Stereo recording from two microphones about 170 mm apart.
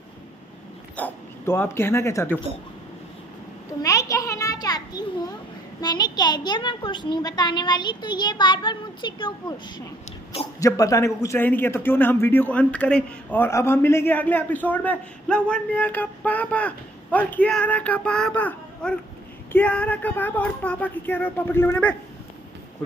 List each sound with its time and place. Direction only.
0.9 s a man's voice: 10° left (ahead or behind)
3.8 s a sound: 20° left (ahead or behind)
5.8 s a child's voice: 25° left (ahead or behind)